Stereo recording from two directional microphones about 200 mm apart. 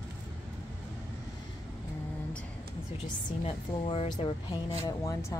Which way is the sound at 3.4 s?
30° left (ahead or behind).